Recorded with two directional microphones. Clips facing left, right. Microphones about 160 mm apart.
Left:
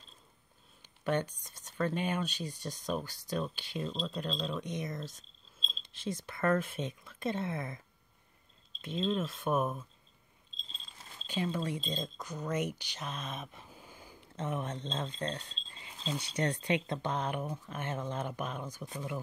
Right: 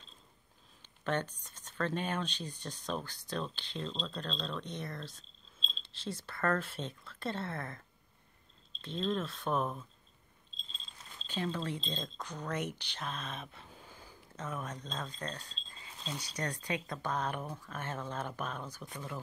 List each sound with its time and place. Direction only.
1.0 s speech: 10° left (ahead or behind)
8.8 s speech: 10° left (ahead or behind)
11.2 s speech: 15° left (ahead or behind)
14.3 s speech: 25° left (ahead or behind)